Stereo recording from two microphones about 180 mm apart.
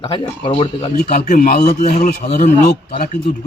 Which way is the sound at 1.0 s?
55° left (ahead or behind).